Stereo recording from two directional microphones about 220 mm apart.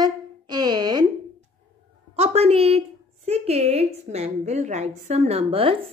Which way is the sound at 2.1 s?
30° right (ahead or behind).